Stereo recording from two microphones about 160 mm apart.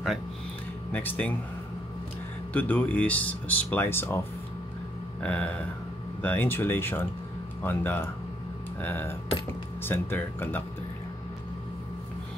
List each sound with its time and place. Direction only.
0.9 s speech: 10° left (ahead or behind)
2.5 s speech: 10° left (ahead or behind)
5.2 s speech: 10° left (ahead or behind)